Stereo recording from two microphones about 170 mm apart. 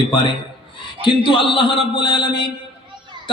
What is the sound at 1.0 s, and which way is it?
A man's voice, 30° left (ahead or behind).